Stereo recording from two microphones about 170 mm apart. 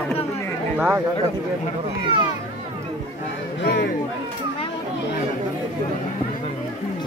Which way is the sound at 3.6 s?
75° left (ahead or behind).